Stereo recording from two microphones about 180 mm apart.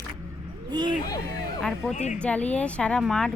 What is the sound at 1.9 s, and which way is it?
Speech, 40° left (ahead or behind).